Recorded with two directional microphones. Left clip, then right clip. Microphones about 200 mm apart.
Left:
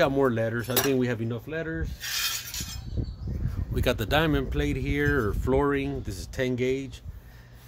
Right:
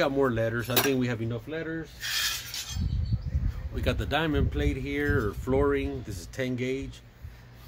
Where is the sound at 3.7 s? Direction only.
55° left (ahead or behind).